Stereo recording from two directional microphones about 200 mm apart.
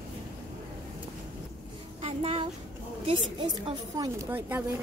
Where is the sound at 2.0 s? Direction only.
30° right (ahead or behind).